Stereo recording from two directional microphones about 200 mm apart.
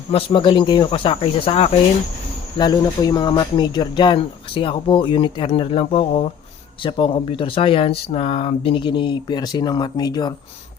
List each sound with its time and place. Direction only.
0.1 s speech: 25° left (ahead or behind)